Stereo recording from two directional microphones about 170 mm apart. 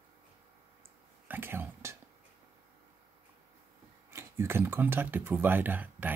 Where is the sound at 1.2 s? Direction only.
10° right (ahead or behind).